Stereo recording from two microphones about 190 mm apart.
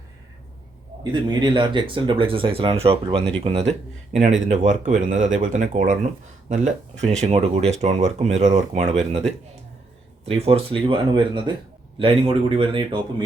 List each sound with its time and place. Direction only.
1.1 s speech: 25° right (ahead or behind)
12.5 s speech: 30° right (ahead or behind)